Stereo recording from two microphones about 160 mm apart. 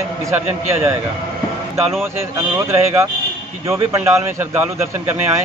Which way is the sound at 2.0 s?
15° right (ahead or behind).